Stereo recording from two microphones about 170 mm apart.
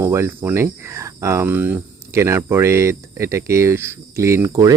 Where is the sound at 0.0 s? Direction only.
15° right (ahead or behind).